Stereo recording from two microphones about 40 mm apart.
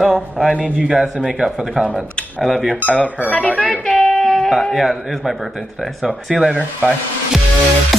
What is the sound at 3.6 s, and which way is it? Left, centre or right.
Music, centre.